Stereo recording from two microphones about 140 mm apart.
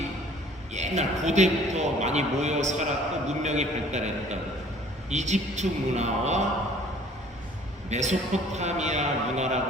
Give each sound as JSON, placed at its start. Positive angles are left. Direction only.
{"t": 0.7, "sound": "a man's voice", "side_deg": -55}
{"t": 7.9, "sound": "a man's voice", "side_deg": -55}